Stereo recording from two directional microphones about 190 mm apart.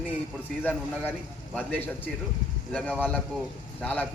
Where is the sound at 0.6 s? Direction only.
10° left (ahead or behind).